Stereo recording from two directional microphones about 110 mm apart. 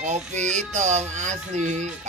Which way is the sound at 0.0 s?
90° right.